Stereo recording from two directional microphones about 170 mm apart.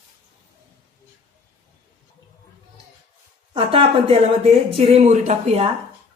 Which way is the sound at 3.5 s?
35° right (ahead or behind).